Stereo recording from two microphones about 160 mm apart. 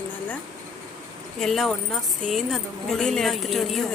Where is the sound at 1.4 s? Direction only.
Centre (ahead or behind).